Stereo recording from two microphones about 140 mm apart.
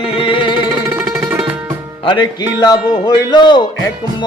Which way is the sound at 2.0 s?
35° left (ahead or behind).